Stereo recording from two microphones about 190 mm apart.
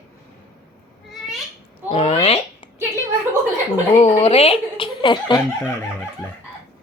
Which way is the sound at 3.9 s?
30° left (ahead or behind).